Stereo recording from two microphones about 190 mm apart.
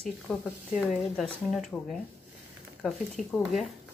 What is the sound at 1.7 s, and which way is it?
Speech, 5° left (ahead or behind).